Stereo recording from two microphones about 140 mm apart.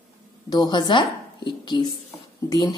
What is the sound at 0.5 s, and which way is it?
A woman's voice, 30° left (ahead or behind).